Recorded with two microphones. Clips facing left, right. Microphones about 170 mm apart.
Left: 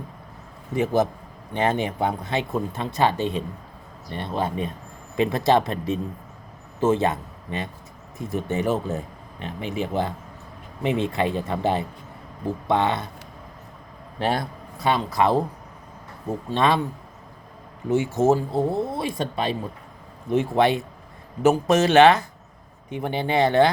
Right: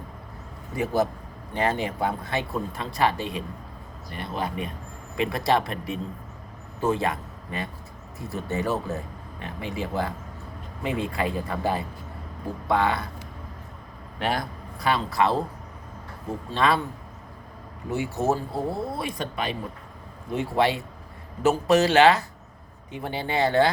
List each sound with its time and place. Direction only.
1.5 s speech: 20° left (ahead or behind)
14.2 s a man's voice: 30° left (ahead or behind)
16.5 s speech: 20° left (ahead or behind)
17.9 s speech: 20° left (ahead or behind)